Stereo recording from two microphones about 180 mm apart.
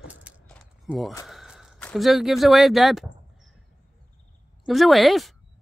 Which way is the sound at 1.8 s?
5° left (ahead or behind).